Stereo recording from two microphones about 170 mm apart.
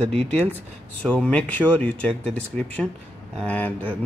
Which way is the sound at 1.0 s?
5° left (ahead or behind).